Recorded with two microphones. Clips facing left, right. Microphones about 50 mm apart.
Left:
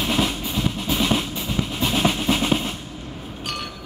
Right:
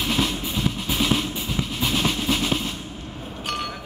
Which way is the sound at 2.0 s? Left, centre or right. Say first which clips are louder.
Left 4 dB; centre.